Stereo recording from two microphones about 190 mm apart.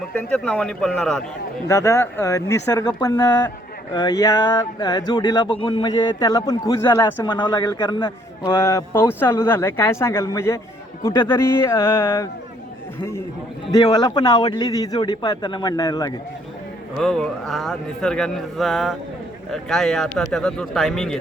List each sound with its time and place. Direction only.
0.1 s speech: 5° left (ahead or behind)
1.6 s a man's voice: 15° left (ahead or behind)
7.3 s a man's voice: 25° left (ahead or behind)
13.7 s speech: 20° left (ahead or behind)
17.0 s speech: centre (ahead or behind)